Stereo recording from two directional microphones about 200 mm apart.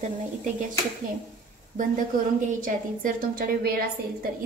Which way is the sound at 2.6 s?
45° right (ahead or behind).